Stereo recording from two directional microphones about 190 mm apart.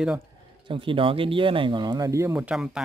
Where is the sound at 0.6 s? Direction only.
25° right (ahead or behind).